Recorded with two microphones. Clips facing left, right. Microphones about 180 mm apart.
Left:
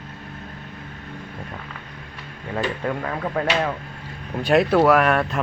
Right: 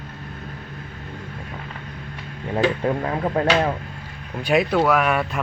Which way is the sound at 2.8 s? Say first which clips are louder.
Right 3 dB; 25° right (ahead or behind).